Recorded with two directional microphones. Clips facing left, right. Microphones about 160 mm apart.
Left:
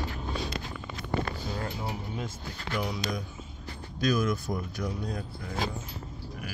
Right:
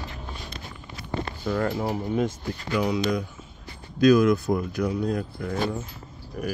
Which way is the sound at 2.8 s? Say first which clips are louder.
Right 10 dB; 70° right (ahead or behind).